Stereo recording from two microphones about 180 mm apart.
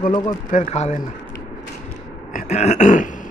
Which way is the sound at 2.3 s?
45° left (ahead or behind).